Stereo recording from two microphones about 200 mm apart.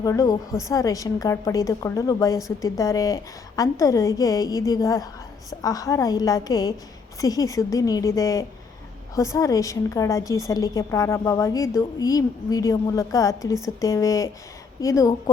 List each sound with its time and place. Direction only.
0.0 s a woman's voice: 15° left (ahead or behind)